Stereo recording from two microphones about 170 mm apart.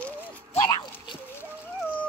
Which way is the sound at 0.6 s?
25° left (ahead or behind).